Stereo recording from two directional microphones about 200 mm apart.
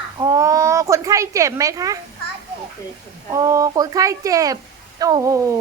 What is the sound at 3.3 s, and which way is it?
Speech, 15° right (ahead or behind).